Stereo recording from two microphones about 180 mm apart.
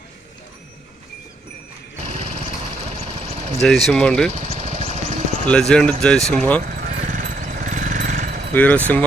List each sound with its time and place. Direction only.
2.0 s light engine: 35° right (ahead or behind)
2.7 s vehicle: 35° right (ahead or behind)
3.6 s speech: centre (ahead or behind)
4.3 s vehicle: 40° right (ahead or behind)
5.5 s speech: 5° left (ahead or behind)
6.6 s a sound: 45° right (ahead or behind)
8.5 s speech: 10° left (ahead or behind)